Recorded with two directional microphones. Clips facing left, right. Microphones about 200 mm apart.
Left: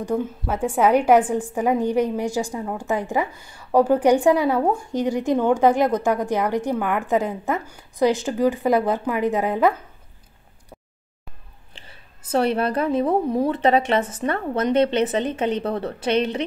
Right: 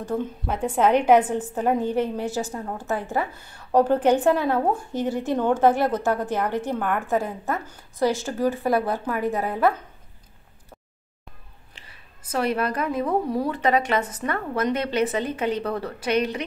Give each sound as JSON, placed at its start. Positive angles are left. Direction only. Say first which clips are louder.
{"t": 0.0, "sound": "a woman's voice", "louder": "left 3 dB", "side_deg": 10}
{"t": 12.3, "sound": "a woman's voice", "louder": "left 4 dB", "side_deg": 30}